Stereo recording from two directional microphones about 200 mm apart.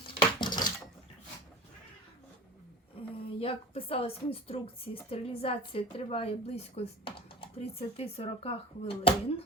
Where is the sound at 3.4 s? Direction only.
30° left (ahead or behind).